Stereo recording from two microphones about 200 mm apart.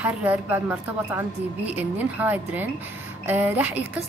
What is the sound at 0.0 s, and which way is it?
A woman's voice, 5° right (ahead or behind).